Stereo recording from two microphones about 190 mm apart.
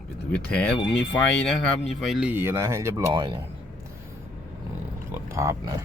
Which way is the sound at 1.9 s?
Centre (ahead or behind).